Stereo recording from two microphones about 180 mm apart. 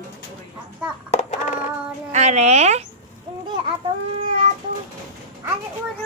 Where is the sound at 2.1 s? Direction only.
40° right (ahead or behind).